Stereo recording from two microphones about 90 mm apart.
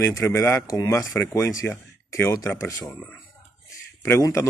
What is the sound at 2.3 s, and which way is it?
Speech, 40° left (ahead or behind).